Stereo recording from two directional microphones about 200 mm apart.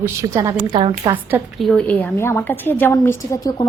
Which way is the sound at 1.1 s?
5° right (ahead or behind).